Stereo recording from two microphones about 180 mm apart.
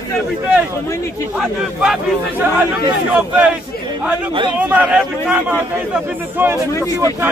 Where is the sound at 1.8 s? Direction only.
5° right (ahead or behind).